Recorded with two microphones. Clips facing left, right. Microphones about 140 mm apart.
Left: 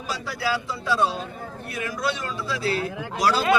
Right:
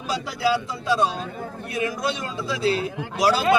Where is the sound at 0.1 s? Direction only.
20° right (ahead or behind).